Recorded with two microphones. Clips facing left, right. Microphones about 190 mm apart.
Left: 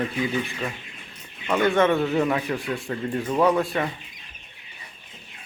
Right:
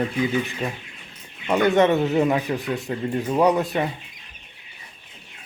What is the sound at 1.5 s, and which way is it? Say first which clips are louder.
Speech: right 2 dB; 20° right (ahead or behind).